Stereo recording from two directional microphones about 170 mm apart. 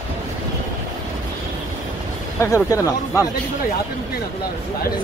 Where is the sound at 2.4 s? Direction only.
20° left (ahead or behind).